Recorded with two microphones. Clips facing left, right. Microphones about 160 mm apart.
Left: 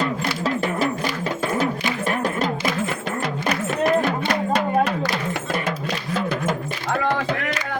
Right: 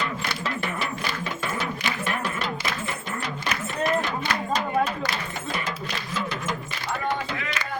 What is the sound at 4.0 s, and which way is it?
Music, 60° left (ahead or behind).